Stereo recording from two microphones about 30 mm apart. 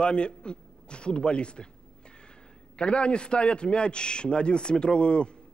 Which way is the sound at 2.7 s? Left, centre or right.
Left.